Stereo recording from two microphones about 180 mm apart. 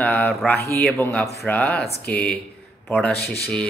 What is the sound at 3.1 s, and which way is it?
Speech, 60° left (ahead or behind).